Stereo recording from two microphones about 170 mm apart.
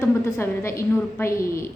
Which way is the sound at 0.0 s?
15° left (ahead or behind).